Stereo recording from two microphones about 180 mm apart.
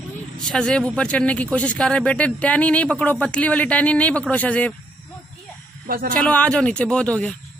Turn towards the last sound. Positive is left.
turn(degrees=5)  # may be behind; listen again after turning